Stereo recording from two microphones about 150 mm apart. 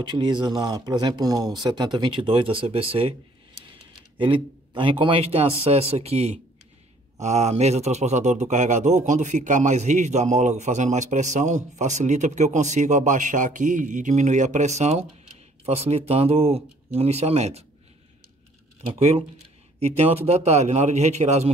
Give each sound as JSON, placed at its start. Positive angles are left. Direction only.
{"t": 0.0, "sound": "speech", "side_deg": -30}
{"t": 4.2, "sound": "a man's voice", "side_deg": -35}
{"t": 18.8, "sound": "a man's voice", "side_deg": -40}